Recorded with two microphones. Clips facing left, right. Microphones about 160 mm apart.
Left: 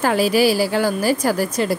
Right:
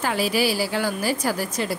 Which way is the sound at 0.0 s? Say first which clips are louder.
Left 6 dB; 45° left (ahead or behind).